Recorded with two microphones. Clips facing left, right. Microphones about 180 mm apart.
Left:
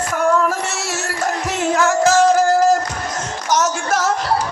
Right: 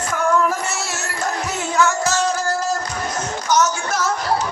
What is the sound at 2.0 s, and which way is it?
Music, 90° left.